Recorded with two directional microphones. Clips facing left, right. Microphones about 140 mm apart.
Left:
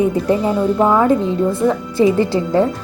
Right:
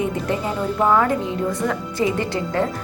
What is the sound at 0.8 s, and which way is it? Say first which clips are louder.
Speech: left 2 dB; 20° left (ahead or behind).